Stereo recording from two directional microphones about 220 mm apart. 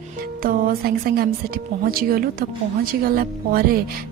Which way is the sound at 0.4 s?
45° right (ahead or behind).